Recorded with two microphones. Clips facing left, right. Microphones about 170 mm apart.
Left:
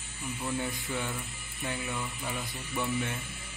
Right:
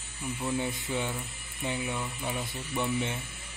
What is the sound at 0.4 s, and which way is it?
Speech, 10° right (ahead or behind).